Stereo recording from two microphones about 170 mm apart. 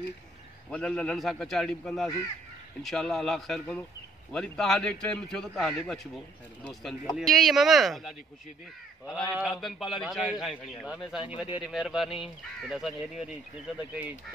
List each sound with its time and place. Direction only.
0.7 s a man's voice: 5° left (ahead or behind)
9.3 s a man's voice: centre (ahead or behind)
11.3 s speech: 30° left (ahead or behind)
11.6 s a man's voice: centre (ahead or behind)